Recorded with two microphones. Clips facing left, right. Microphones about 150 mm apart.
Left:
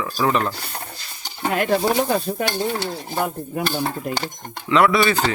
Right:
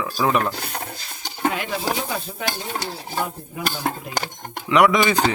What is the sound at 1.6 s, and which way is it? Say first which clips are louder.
Speech: left 7 dB; 50° left (ahead or behind).